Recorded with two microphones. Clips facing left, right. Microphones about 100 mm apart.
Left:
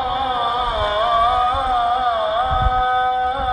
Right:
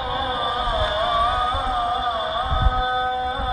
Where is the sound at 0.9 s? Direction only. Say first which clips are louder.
Left 6 dB; 50° left (ahead or behind).